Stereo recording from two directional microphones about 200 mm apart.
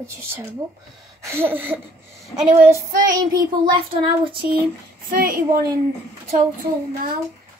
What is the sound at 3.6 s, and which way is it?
Speech, 25° right (ahead or behind).